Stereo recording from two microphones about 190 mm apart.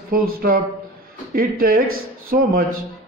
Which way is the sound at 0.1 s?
50° right (ahead or behind).